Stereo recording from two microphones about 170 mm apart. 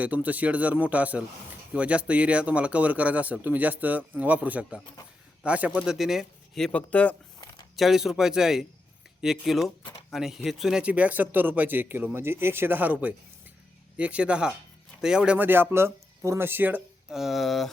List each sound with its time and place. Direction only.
0.0 s speech: 10° right (ahead or behind); by 7.2 s 10° left (ahead or behind)
7.4 s a sound: 20° left (ahead or behind)
7.8 s speech: centre (ahead or behind)